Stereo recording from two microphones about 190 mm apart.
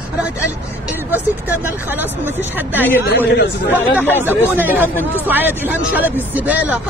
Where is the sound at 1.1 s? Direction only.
10° right (ahead or behind).